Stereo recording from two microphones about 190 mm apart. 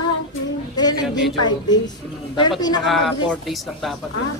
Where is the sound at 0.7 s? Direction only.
20° left (ahead or behind).